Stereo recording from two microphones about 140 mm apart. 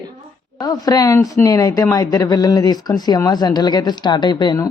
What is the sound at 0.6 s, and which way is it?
Speech, 25° left (ahead or behind).